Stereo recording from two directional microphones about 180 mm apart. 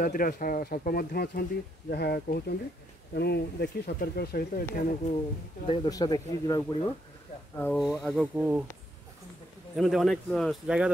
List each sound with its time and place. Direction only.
0.0 s speech: 50° left (ahead or behind)
5.7 s speech: 20° left (ahead or behind)
7.5 s speech: 10° left (ahead or behind)
8.0 s speech: 5° right (ahead or behind)
9.8 s speech: centre (ahead or behind)